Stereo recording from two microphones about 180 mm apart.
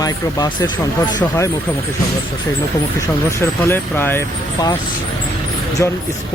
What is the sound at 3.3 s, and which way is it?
Speech, 10° left (ahead or behind).